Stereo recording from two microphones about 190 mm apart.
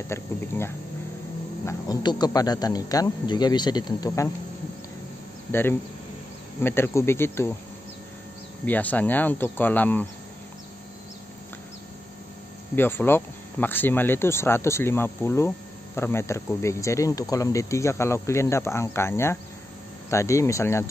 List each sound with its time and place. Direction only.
0.1 s speech: 15° left (ahead or behind)
1.7 s speech: 20° left (ahead or behind)
5.5 s speech: 10° left (ahead or behind)
8.6 s speech: 10° left (ahead or behind)
12.7 s speech: 10° left (ahead or behind)